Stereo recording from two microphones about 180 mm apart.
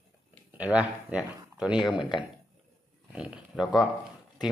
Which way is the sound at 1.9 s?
25° left (ahead or behind).